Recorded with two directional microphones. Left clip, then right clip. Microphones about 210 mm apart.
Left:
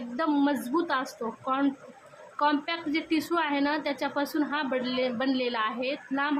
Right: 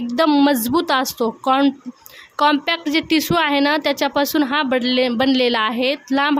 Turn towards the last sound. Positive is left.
turn(degrees=-50)  # may be behind; listen again after turning